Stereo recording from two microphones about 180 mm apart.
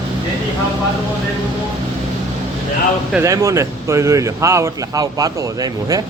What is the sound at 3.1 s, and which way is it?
Speech, 15° right (ahead or behind).